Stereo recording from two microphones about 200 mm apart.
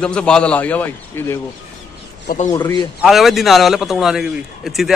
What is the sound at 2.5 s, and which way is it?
Speech, 15° left (ahead or behind).